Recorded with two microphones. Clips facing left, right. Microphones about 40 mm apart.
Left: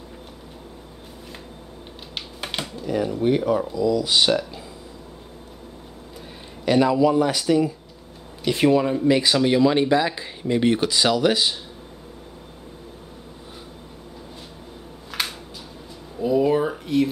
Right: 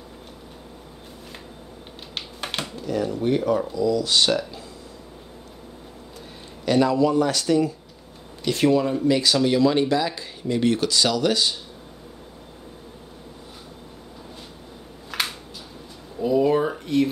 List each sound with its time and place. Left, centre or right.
2.1 s typewriter: centre
2.9 s speech: centre
6.6 s speech: centre
15.0 s a sound: centre